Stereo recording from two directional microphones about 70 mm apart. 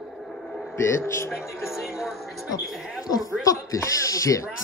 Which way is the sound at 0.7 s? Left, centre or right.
Left.